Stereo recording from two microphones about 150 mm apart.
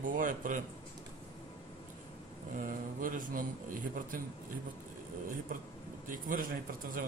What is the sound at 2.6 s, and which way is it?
Speech, 65° right (ahead or behind).